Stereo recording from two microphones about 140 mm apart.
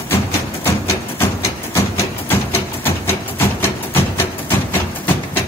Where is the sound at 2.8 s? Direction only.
15° left (ahead or behind).